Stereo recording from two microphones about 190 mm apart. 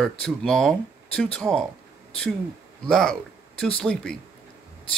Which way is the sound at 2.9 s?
5° left (ahead or behind).